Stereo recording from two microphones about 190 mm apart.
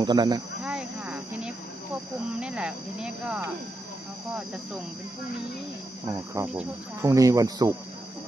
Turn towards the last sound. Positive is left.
turn(degrees=-20)  # may be behind; listen again after turning